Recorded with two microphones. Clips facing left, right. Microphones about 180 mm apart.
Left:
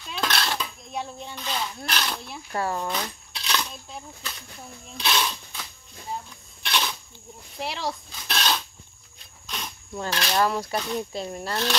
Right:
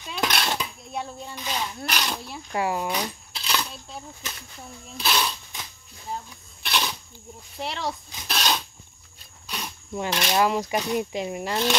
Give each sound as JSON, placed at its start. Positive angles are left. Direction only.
{"t": 0.2, "sound": "dishes", "side_deg": -15}
{"t": 0.9, "sound": "speech", "side_deg": -5}
{"t": 3.3, "sound": "coin", "side_deg": -5}
{"t": 4.9, "sound": "speech", "side_deg": -5}
{"t": 6.6, "sound": "a sound", "side_deg": -5}
{"t": 7.6, "sound": "speech", "side_deg": 0}
{"t": 8.3, "sound": "a sound", "side_deg": -10}
{"t": 9.5, "sound": "speech", "side_deg": -10}